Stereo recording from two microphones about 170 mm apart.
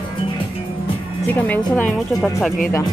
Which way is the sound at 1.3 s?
10° left (ahead or behind).